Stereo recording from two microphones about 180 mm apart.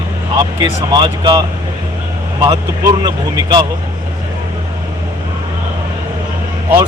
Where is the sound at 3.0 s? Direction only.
20° right (ahead or behind).